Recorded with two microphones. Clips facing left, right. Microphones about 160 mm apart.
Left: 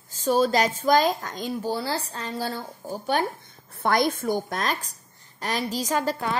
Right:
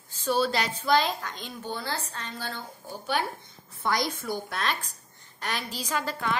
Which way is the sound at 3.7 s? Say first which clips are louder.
Left 6 dB; 55° left (ahead or behind).